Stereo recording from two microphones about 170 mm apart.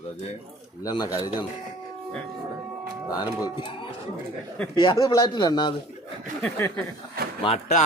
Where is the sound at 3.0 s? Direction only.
20° left (ahead or behind).